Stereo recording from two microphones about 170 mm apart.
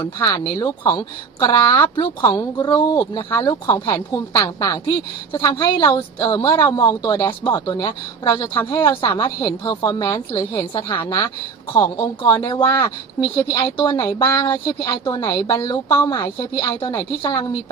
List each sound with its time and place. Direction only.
0.0 s speech: 20° left (ahead or behind)